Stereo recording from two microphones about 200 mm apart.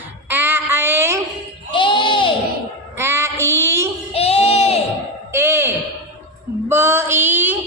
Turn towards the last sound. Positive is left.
turn(degrees=-10)  # may be behind; listen again after turning